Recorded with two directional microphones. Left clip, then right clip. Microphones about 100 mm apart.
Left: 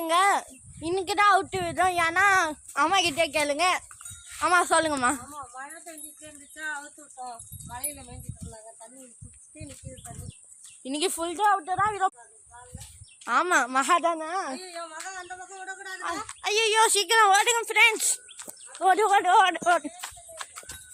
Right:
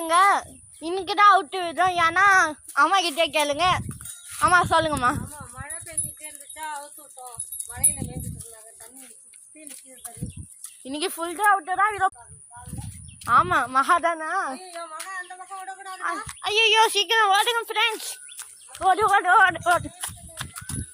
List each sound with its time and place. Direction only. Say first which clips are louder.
0.0 s speech: right 4 dB; 5° left (ahead or behind)
2.7 s speech: right 3 dB; 10° left (ahead or behind)
3.2 s a woman's voice: right 3 dB; 10° right (ahead or behind)
4.4 s speech: right 4 dB; 15° left (ahead or behind)
4.7 s speech: right 2 dB; 25° left (ahead or behind)
10.8 s speech: even; 20° left (ahead or behind)
11.4 s a sound: right 3 dB; centre (ahead or behind)
13.4 s speech: right 2 dB; 50° left (ahead or behind)
14.0 s speech: right 2 dB; 20° left (ahead or behind)
14.8 s a sound: right 3 dB; 5° left (ahead or behind)
16.0 s speech: right 3 dB; 15° left (ahead or behind)
17.2 s speech: left 1 dB; 35° left (ahead or behind)
17.9 s speech: left 3 dB; 50° left (ahead or behind)
19.0 s speech: right 4 dB; 30° left (ahead or behind)